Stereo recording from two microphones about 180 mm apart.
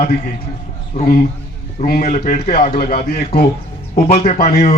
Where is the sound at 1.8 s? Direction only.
50° left (ahead or behind).